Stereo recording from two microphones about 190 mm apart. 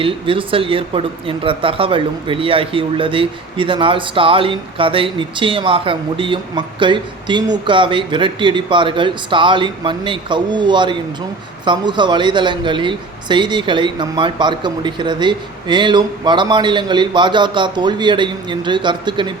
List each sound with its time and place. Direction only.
0.0 s a man's voice: 30° right (ahead or behind)